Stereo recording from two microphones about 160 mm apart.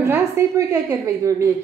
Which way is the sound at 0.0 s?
15° right (ahead or behind).